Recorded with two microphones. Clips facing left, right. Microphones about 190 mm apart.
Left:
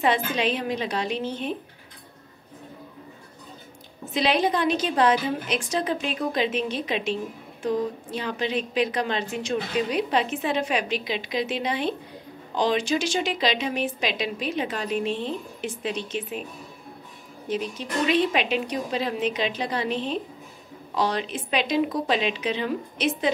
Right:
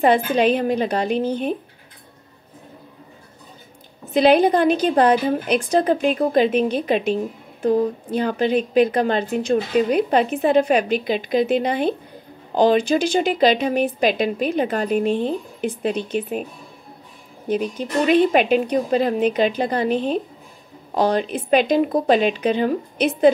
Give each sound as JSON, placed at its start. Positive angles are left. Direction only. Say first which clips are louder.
{"t": 0.0, "sound": "a woman's voice", "louder": "right 7 dB", "side_deg": -55}
{"t": 4.1, "sound": "a woman's voice", "louder": "right 8 dB", "side_deg": -55}
{"t": 17.5, "sound": "a woman's voice", "louder": "right 6 dB", "side_deg": -55}